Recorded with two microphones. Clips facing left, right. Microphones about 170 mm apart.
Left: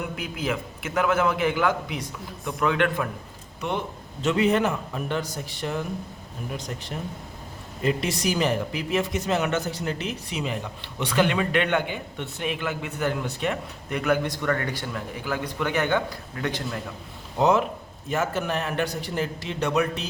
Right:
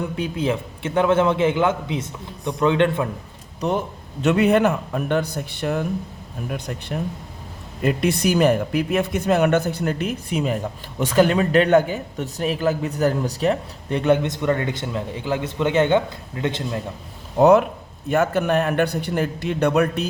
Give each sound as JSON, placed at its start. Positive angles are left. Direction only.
{"t": 0.2, "sound": "a man's voice", "side_deg": -30}
{"t": 3.6, "sound": "speech", "side_deg": -40}
{"t": 4.2, "sound": "a man's voice", "side_deg": -65}
{"t": 7.9, "sound": "speech", "side_deg": -55}
{"t": 17.4, "sound": "a man's voice", "side_deg": -60}